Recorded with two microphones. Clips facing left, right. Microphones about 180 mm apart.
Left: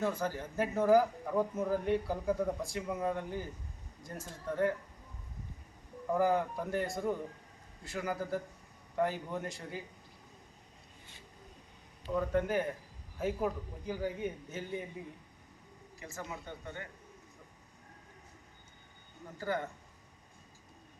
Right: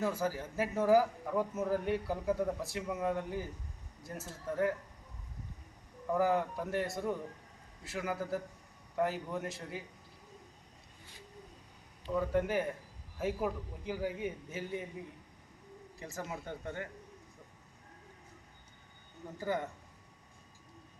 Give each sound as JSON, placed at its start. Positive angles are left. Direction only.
{"t": 0.0, "sound": "speech", "side_deg": -5}
{"t": 6.1, "sound": "speech", "side_deg": 0}
{"t": 12.1, "sound": "speech", "side_deg": -5}
{"t": 16.0, "sound": "speech", "side_deg": -40}
{"t": 19.4, "sound": "speech", "side_deg": -15}